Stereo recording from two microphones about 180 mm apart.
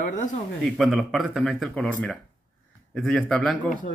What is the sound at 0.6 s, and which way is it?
Speech, centre (ahead or behind).